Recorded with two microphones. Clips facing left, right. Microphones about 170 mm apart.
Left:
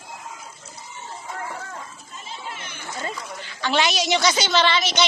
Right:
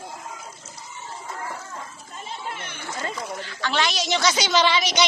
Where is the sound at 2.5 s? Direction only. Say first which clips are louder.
Right 2 dB; 55° right (ahead or behind).